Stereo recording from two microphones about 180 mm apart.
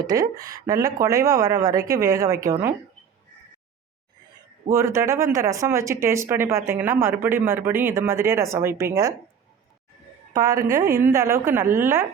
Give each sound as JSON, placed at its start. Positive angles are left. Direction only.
{"t": 0.0, "sound": "a woman's voice", "side_deg": -20}
{"t": 4.7, "sound": "speech", "side_deg": -15}
{"t": 10.3, "sound": "speech", "side_deg": -20}